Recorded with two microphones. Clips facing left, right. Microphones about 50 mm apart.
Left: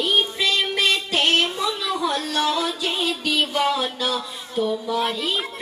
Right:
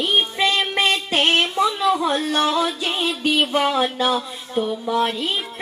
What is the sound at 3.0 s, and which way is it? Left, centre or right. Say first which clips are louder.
Music: right 5 dB; right.